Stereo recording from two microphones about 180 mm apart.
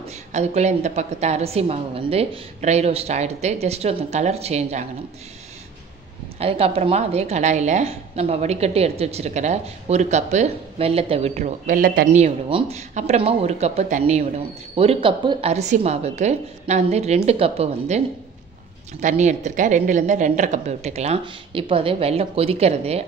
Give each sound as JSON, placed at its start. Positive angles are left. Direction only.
{"t": 0.3, "sound": "speech", "side_deg": -40}
{"t": 6.4, "sound": "speech", "side_deg": -35}
{"t": 12.2, "sound": "speech", "side_deg": -35}